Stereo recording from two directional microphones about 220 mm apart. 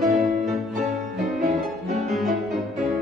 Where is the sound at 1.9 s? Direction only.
Centre (ahead or behind).